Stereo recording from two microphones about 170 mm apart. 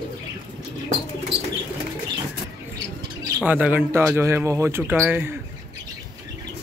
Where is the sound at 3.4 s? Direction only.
10° right (ahead or behind).